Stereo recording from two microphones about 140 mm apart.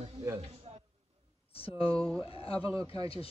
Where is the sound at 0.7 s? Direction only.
45° right (ahead or behind).